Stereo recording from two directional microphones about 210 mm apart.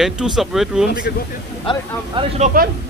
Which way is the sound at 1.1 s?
50° left (ahead or behind).